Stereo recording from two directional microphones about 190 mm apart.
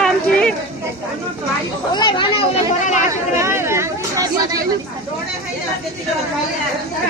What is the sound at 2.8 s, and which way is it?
Chatter, 40° left (ahead or behind).